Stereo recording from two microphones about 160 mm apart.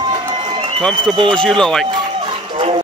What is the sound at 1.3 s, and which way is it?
Speech, 5° left (ahead or behind).